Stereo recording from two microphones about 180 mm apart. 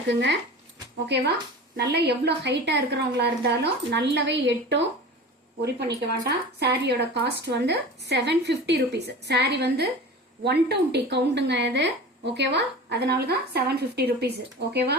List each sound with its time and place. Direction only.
0.1 s speech: 75° right (ahead or behind)
5.6 s speech: 65° right (ahead or behind)